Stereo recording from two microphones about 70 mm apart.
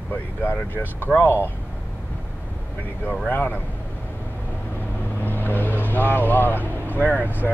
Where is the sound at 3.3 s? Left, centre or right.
Left.